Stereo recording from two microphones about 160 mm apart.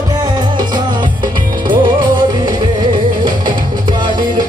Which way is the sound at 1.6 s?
30° right (ahead or behind).